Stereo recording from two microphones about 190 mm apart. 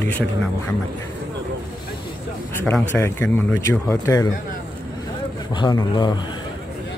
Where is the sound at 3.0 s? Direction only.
10° left (ahead or behind).